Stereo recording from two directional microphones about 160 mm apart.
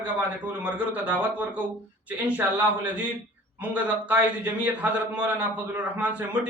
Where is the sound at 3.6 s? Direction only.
10° right (ahead or behind).